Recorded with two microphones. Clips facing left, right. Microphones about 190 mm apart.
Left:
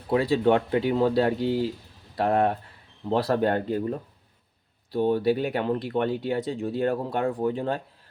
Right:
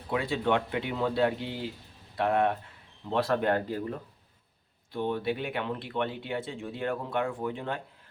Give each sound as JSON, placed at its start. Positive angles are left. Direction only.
{"t": 0.1, "sound": "speech", "side_deg": 35}
{"t": 4.9, "sound": "speech", "side_deg": 35}